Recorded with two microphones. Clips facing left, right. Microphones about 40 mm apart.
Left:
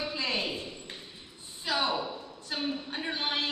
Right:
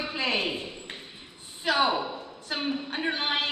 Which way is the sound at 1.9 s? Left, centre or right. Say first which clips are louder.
Right 4 dB; right.